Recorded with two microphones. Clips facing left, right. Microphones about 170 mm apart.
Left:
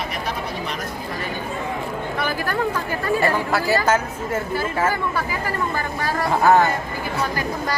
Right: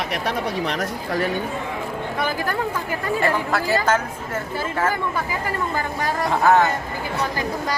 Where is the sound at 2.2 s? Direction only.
20° right (ahead or behind).